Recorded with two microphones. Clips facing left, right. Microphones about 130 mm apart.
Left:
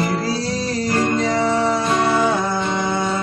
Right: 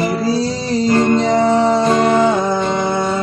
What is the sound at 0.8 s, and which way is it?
Music, 25° right (ahead or behind).